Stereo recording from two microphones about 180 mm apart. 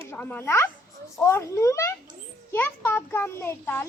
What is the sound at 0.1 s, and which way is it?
A child's voice, 10° left (ahead or behind).